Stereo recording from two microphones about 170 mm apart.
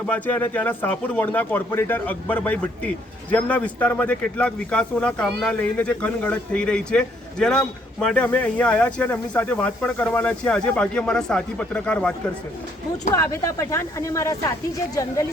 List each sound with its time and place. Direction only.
0.1 s speech: 10° left (ahead or behind)